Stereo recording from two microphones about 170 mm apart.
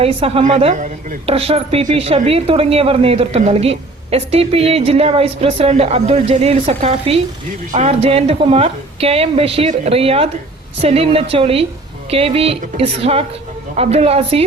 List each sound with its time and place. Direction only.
0.0 s a woman's voice: 35° right (ahead or behind)